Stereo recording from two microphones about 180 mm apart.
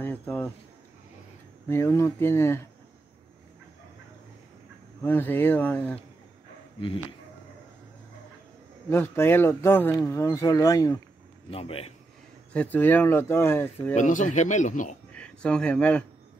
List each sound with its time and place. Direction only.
0.0 s speech: 10° left (ahead or behind)
1.7 s speech: 15° left (ahead or behind)
5.0 s speech: 10° left (ahead or behind)
8.9 s speech: 15° left (ahead or behind)
11.5 s a man's voice: 30° left (ahead or behind)
12.5 s speech: 10° left (ahead or behind)
13.9 s speech: 45° left (ahead or behind)
15.1 s speech: 5° left (ahead or behind)